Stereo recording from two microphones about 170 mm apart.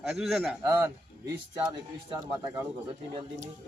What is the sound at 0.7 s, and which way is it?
Speech, 15° right (ahead or behind).